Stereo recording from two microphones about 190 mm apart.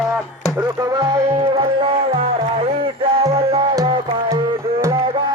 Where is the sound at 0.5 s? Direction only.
20° right (ahead or behind).